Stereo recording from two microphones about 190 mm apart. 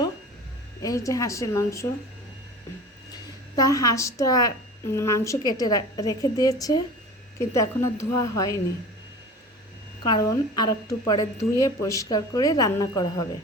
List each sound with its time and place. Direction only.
0.8 s a woman's voice: 20° left (ahead or behind)
3.5 s a woman's voice: 20° left (ahead or behind)
10.0 s a woman's voice: 20° left (ahead or behind)